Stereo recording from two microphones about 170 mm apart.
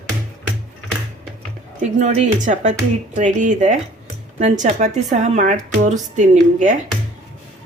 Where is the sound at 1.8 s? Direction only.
45° right (ahead or behind).